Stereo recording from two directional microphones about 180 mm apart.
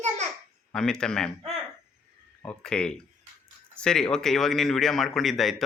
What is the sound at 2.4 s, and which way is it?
Speech, 5° left (ahead or behind).